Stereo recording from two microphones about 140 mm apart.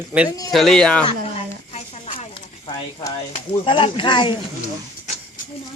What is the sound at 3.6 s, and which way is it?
Speech, 35° left (ahead or behind).